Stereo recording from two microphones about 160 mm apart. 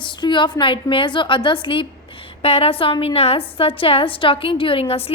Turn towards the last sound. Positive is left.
turn(degrees=35)  # may be behind; listen again after turning